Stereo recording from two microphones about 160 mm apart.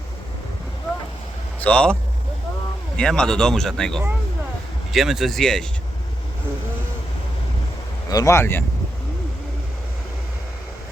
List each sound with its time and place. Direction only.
1.6 s speech: 5° left (ahead or behind)
3.0 s speech: 5° left (ahead or behind)
8.1 s speech: 20° left (ahead or behind)